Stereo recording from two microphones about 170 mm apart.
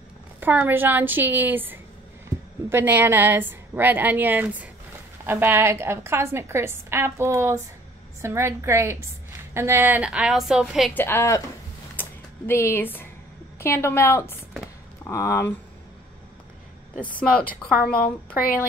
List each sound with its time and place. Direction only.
0.4 s a woman's voice: 10° right (ahead or behind)
11.0 s a woman's voice: 15° left (ahead or behind)
12.0 s a sound: 15° left (ahead or behind)
13.6 s a woman's voice: 15° left (ahead or behind)
17.5 s a woman's voice: 60° left (ahead or behind)